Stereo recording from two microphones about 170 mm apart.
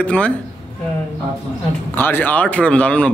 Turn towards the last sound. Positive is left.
turn(degrees=5)  # may be behind; listen again after turning